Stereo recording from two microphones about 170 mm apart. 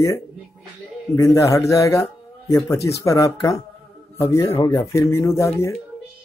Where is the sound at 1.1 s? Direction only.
20° left (ahead or behind).